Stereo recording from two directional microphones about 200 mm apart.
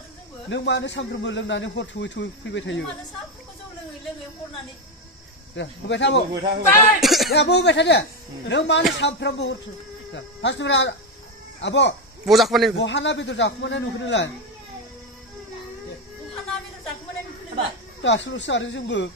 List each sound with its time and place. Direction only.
0.5 s speech: 60° left (ahead or behind)
5.6 s speech: 60° left (ahead or behind)
6.7 s speech: centre (ahead or behind)
7.2 s speech: 55° left (ahead or behind)
12.3 s speech: centre (ahead or behind)
12.7 s speech: 65° left (ahead or behind)
18.0 s speech: 65° left (ahead or behind)